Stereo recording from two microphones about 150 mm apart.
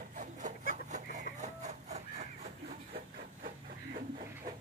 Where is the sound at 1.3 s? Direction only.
55° right (ahead or behind).